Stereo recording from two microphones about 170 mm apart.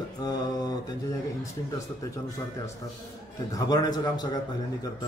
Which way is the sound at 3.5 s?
20° left (ahead or behind).